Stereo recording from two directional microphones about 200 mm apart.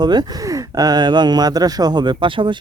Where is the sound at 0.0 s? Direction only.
20° right (ahead or behind).